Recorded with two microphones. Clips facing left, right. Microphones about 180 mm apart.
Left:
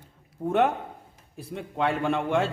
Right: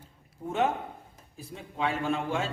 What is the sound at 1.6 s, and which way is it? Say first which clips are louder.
Speech: left 4 dB; 60° left (ahead or behind).